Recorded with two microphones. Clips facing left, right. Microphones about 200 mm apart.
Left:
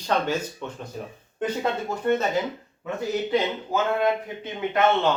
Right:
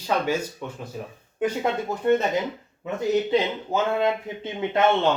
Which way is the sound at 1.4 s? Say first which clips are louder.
Right 2 dB; 15° right (ahead or behind).